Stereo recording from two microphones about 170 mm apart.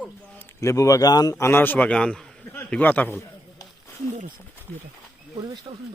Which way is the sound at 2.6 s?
10° left (ahead or behind).